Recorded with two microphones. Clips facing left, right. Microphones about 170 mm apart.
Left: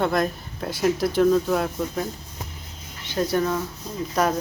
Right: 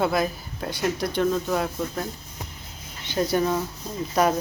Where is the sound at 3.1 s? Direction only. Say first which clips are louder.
Even; 5° right (ahead or behind).